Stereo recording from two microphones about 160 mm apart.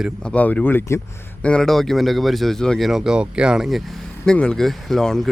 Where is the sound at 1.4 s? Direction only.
5° left (ahead or behind).